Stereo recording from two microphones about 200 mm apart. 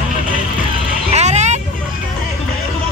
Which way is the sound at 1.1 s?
35° right (ahead or behind).